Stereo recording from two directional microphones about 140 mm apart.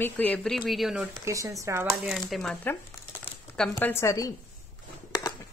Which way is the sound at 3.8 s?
20° left (ahead or behind).